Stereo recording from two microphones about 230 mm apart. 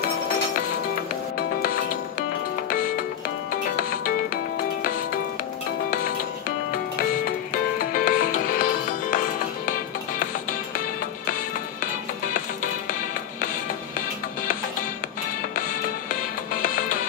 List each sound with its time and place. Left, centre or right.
7.8 s music: left
16.6 s music: left